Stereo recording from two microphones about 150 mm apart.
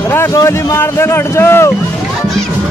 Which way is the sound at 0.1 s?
20° left (ahead or behind).